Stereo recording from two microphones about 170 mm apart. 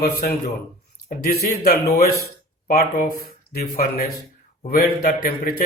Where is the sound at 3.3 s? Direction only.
60° left (ahead or behind).